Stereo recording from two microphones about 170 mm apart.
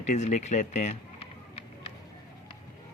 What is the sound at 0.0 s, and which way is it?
Speech, 45° left (ahead or behind).